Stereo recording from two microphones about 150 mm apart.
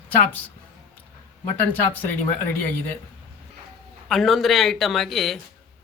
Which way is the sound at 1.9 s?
10° left (ahead or behind).